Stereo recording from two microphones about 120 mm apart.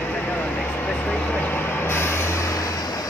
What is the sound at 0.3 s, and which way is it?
Vehicle, 15° left (ahead or behind).